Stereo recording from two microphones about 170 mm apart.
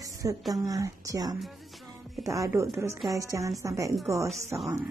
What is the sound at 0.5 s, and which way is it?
A woman's voice, 20° right (ahead or behind).